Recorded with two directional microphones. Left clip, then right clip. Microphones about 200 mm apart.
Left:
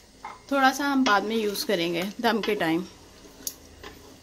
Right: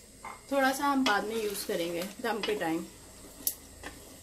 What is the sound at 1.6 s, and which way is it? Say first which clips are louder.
A woman's voice: left 7 dB; 50° left (ahead or behind).